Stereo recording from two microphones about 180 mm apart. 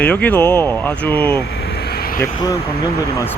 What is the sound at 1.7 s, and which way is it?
Vehicle, 60° left (ahead or behind).